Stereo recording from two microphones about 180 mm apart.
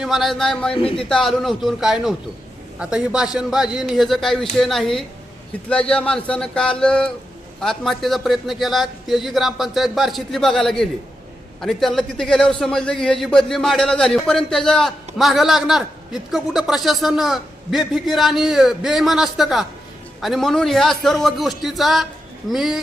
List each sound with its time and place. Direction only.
0.0 s a man's voice: centre (ahead or behind)
0.7 s speech: 30° left (ahead or behind)
0.9 s a man's voice: 5° left (ahead or behind)